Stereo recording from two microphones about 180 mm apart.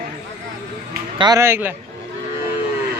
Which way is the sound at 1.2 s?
20° right (ahead or behind).